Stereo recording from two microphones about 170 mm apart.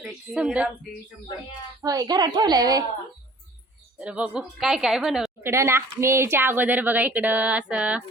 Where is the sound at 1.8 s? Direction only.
20° right (ahead or behind).